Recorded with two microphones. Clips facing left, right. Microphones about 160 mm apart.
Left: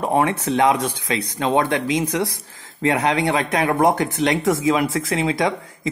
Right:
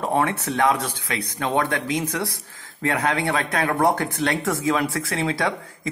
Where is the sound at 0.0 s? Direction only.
20° left (ahead or behind).